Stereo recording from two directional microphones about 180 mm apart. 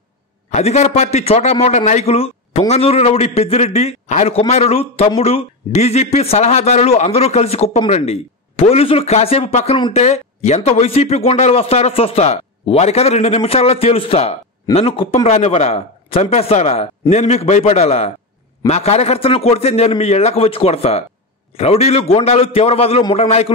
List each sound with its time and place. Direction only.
0.5 s speech: 35° left (ahead or behind)